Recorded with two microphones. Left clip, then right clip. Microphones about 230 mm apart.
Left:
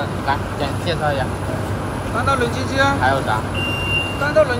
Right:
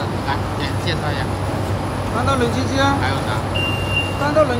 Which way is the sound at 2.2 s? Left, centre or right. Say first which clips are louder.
Even; right.